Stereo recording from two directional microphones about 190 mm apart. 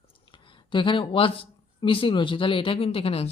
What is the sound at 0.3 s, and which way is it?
Speech, 25° left (ahead or behind).